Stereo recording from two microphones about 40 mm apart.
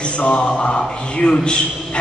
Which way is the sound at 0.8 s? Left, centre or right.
Left.